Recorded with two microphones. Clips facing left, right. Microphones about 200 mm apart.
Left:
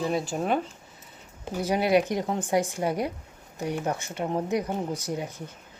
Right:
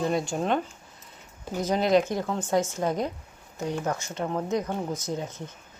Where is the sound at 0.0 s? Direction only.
5° left (ahead or behind).